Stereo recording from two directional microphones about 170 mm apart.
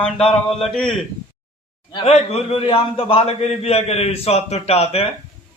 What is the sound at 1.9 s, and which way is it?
A man's voice, 30° left (ahead or behind).